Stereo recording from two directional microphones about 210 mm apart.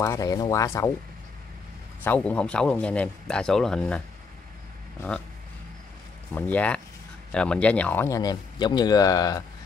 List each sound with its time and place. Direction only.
0.0 s speech: 15° left (ahead or behind)
2.0 s speech: 5° left (ahead or behind)
6.3 s speech: 5° left (ahead or behind)